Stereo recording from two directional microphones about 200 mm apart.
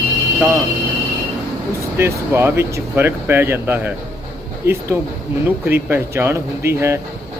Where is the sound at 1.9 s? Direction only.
15° right (ahead or behind).